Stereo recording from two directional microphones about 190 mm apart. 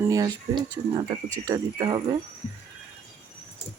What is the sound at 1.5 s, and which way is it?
Speech, 20° right (ahead or behind).